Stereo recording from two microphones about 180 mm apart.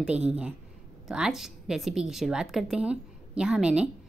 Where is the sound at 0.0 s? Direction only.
5° right (ahead or behind).